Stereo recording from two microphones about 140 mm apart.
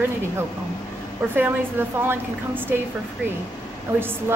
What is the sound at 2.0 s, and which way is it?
Speech, 15° right (ahead or behind).